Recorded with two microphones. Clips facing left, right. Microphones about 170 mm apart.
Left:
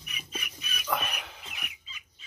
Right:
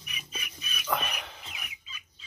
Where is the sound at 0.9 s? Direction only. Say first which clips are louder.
Even; 5° left (ahead or behind).